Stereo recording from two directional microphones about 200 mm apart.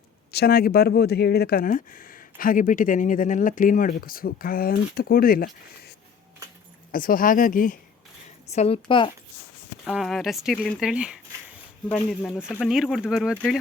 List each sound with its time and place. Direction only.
0.3 s speech: 50° left (ahead or behind)
6.9 s speech: 45° left (ahead or behind)
8.5 s a woman's voice: 30° left (ahead or behind)
9.8 s speech: centre (ahead or behind)